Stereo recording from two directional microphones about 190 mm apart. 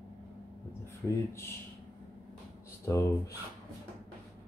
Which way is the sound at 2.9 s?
15° left (ahead or behind).